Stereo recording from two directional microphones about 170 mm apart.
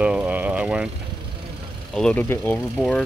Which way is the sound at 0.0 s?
5° right (ahead or behind).